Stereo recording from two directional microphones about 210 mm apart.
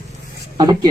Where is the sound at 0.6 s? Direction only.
20° right (ahead or behind).